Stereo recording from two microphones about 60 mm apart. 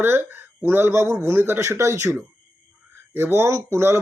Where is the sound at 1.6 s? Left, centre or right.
Right.